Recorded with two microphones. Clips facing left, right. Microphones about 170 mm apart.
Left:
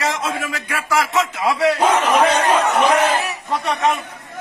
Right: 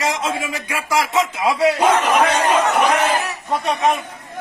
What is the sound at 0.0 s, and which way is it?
A man's voice, 10° right (ahead or behind).